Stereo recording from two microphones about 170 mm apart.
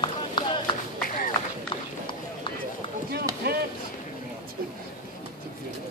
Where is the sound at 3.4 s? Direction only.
70° right (ahead or behind).